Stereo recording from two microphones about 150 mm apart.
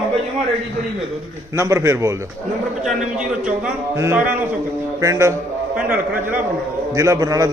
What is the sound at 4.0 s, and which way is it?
A man's voice, 15° right (ahead or behind).